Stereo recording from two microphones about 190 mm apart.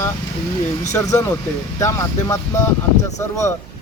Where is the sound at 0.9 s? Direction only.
15° left (ahead or behind).